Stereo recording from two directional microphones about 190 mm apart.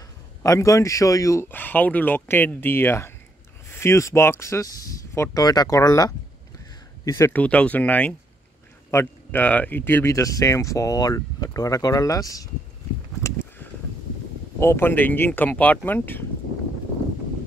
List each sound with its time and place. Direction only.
0.4 s speech: 15° left (ahead or behind)
13.2 s a sound: 10° left (ahead or behind)
14.6 s speech: 10° left (ahead or behind)